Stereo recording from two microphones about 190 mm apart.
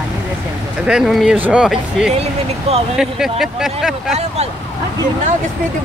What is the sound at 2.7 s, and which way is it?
Speech, 35° right (ahead or behind).